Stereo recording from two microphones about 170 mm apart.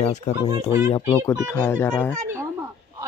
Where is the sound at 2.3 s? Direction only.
15° right (ahead or behind).